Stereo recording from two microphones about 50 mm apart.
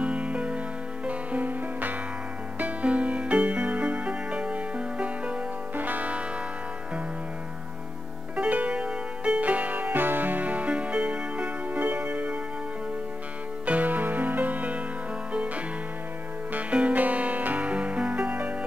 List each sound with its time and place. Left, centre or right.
0.0 s music: right
8.4 s music: right
13.7 s music: right